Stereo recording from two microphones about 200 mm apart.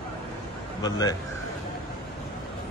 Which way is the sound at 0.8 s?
20° left (ahead or behind).